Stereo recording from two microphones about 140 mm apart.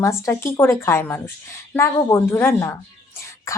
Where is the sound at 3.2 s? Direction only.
20° left (ahead or behind).